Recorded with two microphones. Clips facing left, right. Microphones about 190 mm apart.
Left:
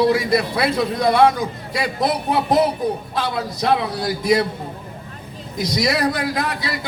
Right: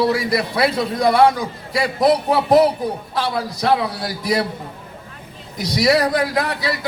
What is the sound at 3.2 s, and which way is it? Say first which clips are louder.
A man's voice: right 5 dB; 25° left (ahead or behind).